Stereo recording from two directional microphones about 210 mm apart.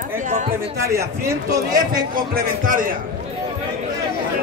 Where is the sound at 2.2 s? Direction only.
40° right (ahead or behind).